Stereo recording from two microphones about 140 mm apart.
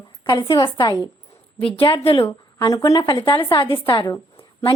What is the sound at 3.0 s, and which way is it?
A woman's voice, 40° left (ahead or behind).